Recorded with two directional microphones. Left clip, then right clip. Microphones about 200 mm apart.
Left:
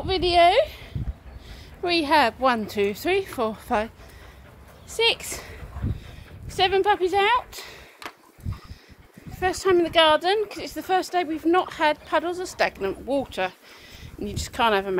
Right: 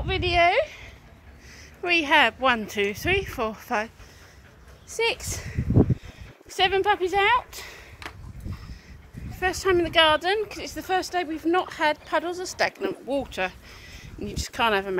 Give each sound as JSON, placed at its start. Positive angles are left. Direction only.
{"t": 0.3, "sound": "speech", "side_deg": 10}
{"t": 1.8, "sound": "speech", "side_deg": 0}
{"t": 4.9, "sound": "speech", "side_deg": 0}
{"t": 8.0, "sound": "a sound", "side_deg": 45}
{"t": 9.4, "sound": "speech", "side_deg": 0}